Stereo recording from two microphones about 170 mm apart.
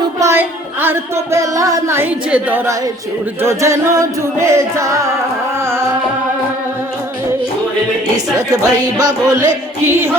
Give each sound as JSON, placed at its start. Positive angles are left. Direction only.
{"t": 0.2, "sound": "music", "side_deg": -15}
{"t": 8.4, "sound": "speech", "side_deg": -20}
{"t": 9.8, "sound": "music", "side_deg": -15}